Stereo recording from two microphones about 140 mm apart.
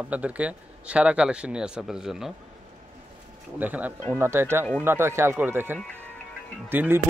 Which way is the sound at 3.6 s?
10° right (ahead or behind).